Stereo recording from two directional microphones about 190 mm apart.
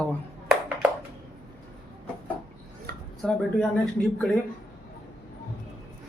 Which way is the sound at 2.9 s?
55° right (ahead or behind).